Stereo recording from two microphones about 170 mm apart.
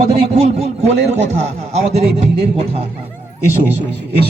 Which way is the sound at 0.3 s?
40° right (ahead or behind).